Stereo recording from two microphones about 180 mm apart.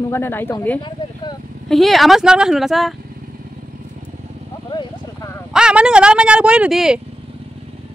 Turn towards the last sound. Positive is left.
turn(degrees=-5)  # may be behind; listen again after turning